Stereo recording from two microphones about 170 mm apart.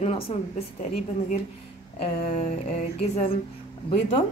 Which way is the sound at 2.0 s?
40° left (ahead or behind).